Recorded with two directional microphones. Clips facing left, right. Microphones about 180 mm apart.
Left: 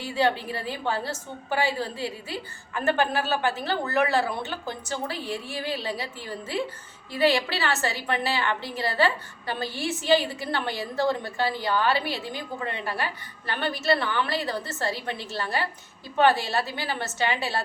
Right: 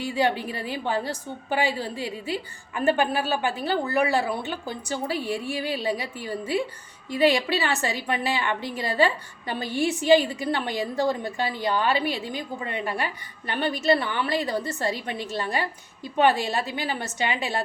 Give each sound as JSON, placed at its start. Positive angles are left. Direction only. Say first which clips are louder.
{"t": 0.0, "sound": "a woman's voice", "louder": "right 1 dB", "side_deg": -15}